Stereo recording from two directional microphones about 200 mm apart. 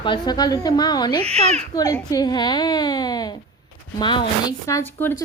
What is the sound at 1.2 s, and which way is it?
Speech, 30° right (ahead or behind).